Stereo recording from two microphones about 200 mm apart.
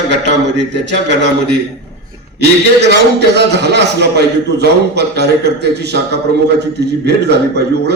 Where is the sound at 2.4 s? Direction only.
60° right (ahead or behind).